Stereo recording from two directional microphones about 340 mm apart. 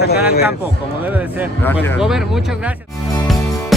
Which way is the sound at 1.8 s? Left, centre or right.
Centre.